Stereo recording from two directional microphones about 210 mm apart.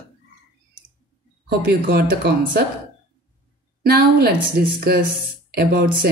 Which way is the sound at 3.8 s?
50° right (ahead or behind).